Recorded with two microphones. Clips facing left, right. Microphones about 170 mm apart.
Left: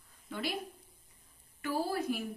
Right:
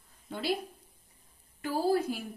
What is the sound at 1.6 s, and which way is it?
Speech, 30° right (ahead or behind).